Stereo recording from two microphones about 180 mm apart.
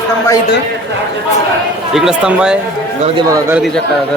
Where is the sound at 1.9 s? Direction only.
5° right (ahead or behind).